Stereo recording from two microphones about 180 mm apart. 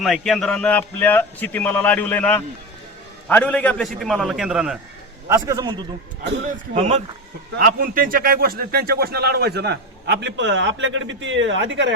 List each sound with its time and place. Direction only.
0.0 s a man's voice: centre (ahead or behind)
5.3 s a man's voice: 20° right (ahead or behind)
6.7 s speech: 40° right (ahead or behind)
7.6 s speech: 50° right (ahead or behind); by 11.9 s 90° right